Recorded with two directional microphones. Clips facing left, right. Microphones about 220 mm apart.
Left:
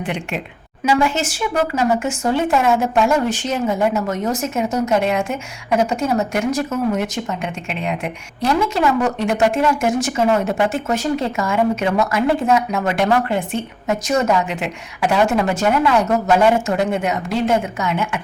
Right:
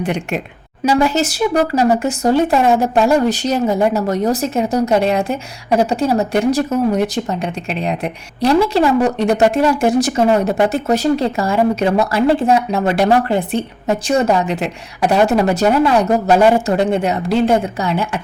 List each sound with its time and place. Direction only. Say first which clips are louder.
0.0 s a woman's voice: right 4 dB; 45° right (ahead or behind)